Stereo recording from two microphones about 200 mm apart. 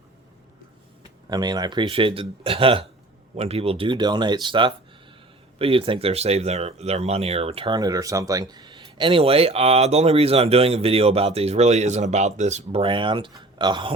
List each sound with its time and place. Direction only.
1.3 s speech: 20° right (ahead or behind)